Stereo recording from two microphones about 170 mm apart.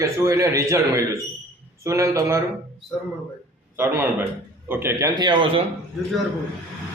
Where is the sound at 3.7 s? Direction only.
15° right (ahead or behind).